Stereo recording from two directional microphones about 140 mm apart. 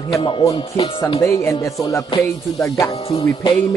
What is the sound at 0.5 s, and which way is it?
Speech, 40° left (ahead or behind).